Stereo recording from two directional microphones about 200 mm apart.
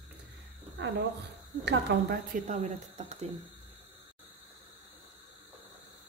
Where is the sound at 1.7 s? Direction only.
55° right (ahead or behind).